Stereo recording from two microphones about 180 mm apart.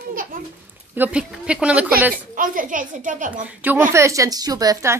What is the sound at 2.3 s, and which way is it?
A child's voice, 50° right (ahead or behind).